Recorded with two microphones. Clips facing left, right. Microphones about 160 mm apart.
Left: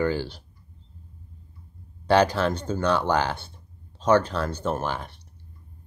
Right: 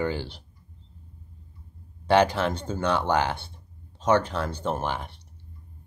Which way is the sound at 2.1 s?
20° right (ahead or behind).